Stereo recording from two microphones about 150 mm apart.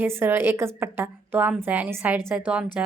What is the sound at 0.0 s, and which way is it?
A woman's voice, 15° right (ahead or behind).